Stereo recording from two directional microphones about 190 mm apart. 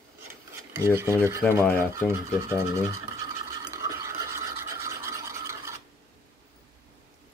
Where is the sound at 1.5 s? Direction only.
10° left (ahead or behind).